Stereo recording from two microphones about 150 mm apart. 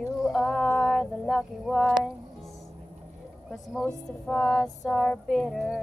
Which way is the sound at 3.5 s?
5° left (ahead or behind).